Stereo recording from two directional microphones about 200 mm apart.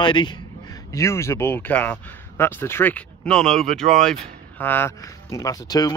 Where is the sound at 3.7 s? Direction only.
35° right (ahead or behind).